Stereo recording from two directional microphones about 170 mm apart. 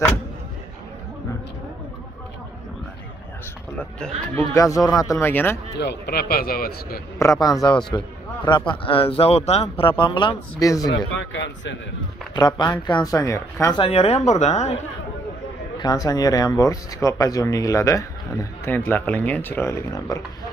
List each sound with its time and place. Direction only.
4.4 s speech: 20° left (ahead or behind)
5.8 s a man's voice: 75° left (ahead or behind)
7.2 s speech: 20° left (ahead or behind)
11.1 s a man's voice: 90° left
12.4 s speech: 25° left (ahead or behind)
13.7 s speech: 35° left (ahead or behind)
15.8 s speech: 20° left (ahead or behind)